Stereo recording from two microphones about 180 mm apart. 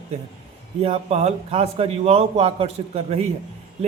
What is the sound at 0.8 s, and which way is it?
A man's voice, 35° right (ahead or behind).